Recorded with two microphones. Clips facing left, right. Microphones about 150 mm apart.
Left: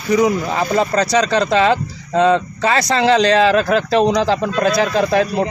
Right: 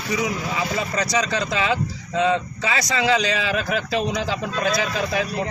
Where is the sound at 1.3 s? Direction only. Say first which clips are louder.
Left 8 dB; 65° left (ahead or behind).